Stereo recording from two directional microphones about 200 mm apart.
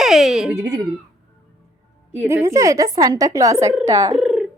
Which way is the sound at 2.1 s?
10° right (ahead or behind).